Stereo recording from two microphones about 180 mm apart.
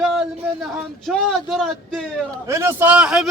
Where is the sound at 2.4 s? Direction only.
15° right (ahead or behind).